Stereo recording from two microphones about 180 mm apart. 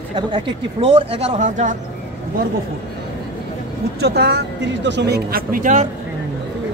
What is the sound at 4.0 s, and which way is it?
Speech, 65° right (ahead or behind).